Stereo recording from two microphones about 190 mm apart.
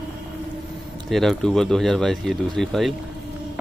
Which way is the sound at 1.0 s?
Centre (ahead or behind).